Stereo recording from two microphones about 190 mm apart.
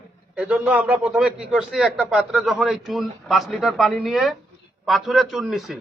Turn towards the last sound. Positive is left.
turn(degrees=0)  # may be behind; listen again after turning